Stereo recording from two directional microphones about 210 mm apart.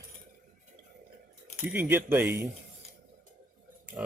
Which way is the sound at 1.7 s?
10° right (ahead or behind).